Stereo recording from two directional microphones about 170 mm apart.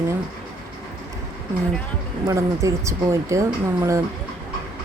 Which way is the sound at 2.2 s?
15° right (ahead or behind).